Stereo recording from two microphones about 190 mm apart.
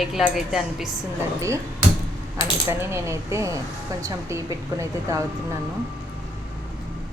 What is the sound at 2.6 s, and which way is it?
A woman's voice, 15° right (ahead or behind).